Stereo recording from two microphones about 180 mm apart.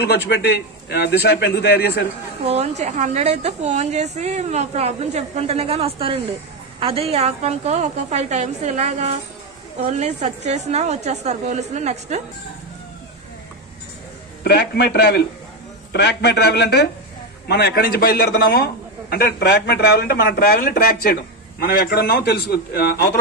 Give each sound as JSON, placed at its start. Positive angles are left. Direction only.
{"t": 0.0, "sound": "a man's voice", "side_deg": 65}
{"t": 2.4, "sound": "a woman's voice", "side_deg": -35}
{"t": 14.4, "sound": "a man's voice", "side_deg": 65}